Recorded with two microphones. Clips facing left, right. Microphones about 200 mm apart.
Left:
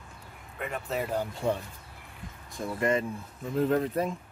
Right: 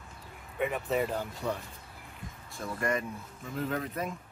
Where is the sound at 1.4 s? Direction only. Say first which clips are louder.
Left 5 dB; 30° left (ahead or behind).